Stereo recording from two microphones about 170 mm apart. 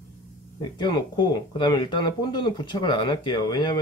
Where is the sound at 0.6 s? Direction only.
25° left (ahead or behind).